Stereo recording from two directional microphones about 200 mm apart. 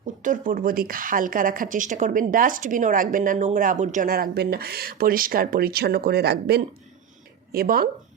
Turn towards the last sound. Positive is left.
turn(degrees=-50)  # may be behind; listen again after turning